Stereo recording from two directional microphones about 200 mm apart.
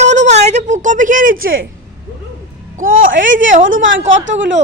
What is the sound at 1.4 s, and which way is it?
Speech, 80° right.